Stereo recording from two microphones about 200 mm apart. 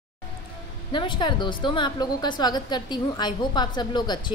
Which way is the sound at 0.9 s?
25° left (ahead or behind).